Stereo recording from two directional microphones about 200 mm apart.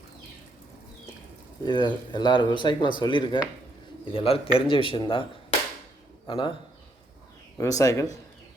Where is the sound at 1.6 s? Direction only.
20° left (ahead or behind).